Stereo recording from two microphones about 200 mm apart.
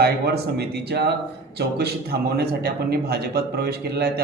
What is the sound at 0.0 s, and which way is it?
A man's voice, 55° right (ahead or behind).